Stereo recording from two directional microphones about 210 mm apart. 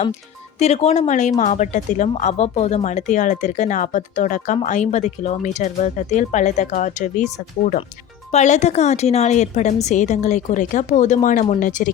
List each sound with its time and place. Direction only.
0.6 s speech: 30° left (ahead or behind)